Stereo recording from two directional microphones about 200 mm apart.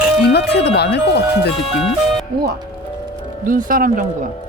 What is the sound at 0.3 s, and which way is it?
Speech, 55° left (ahead or behind).